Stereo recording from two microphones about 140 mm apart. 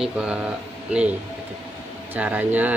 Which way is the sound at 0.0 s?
5° right (ahead or behind).